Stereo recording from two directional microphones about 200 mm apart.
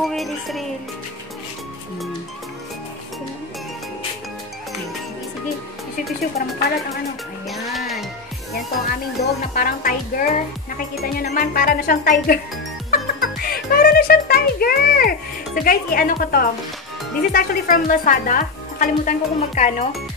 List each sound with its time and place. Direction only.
0.0 s music: centre (ahead or behind)
7.4 s music: centre (ahead or behind)
8.8 s speech: 40° left (ahead or behind)
12.9 s music: 45° left (ahead or behind)
15.6 s speech: 45° left (ahead or behind)